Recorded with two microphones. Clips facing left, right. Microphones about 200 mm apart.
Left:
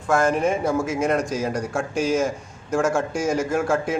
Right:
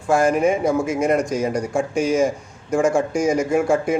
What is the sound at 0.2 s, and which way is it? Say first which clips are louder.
A man's voice: right 3 dB; 10° right (ahead or behind).